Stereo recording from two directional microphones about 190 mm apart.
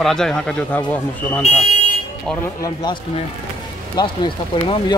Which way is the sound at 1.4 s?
40° left (ahead or behind).